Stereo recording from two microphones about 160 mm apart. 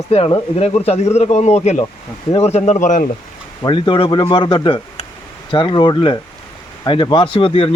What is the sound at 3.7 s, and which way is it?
Speech, 30° left (ahead or behind).